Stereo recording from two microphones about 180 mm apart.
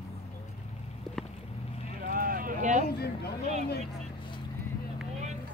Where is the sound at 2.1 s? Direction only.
50° right (ahead or behind).